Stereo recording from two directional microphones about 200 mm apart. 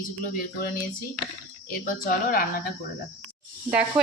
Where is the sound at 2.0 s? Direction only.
45° left (ahead or behind).